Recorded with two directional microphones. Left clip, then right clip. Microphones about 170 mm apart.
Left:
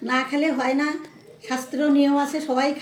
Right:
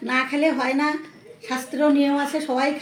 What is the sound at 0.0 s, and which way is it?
A woman's voice, 10° left (ahead or behind).